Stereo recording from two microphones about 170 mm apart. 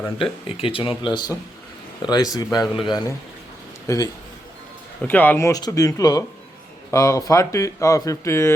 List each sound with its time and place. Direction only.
0.2 s speech: 35° left (ahead or behind)
5.0 s speech: 10° left (ahead or behind)